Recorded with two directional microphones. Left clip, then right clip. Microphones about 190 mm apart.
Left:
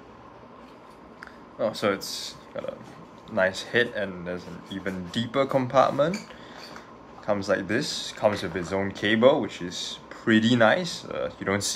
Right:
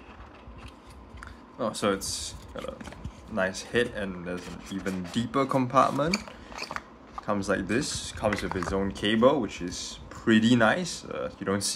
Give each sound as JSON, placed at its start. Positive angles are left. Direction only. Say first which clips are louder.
{"t": 1.2, "sound": "a sound", "louder": "left 4 dB", "side_deg": -30}
{"t": 3.3, "sound": "speech", "louder": "left 4 dB", "side_deg": -20}
{"t": 7.2, "sound": "speech", "louder": "left 3 dB", "side_deg": -25}